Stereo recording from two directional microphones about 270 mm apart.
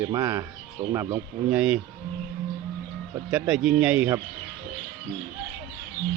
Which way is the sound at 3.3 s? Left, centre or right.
Centre.